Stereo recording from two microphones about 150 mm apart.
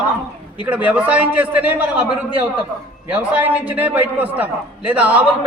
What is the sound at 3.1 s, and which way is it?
A man's voice, 10° right (ahead or behind).